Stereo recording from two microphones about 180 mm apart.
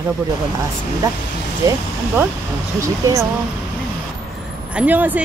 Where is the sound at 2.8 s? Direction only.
15° right (ahead or behind).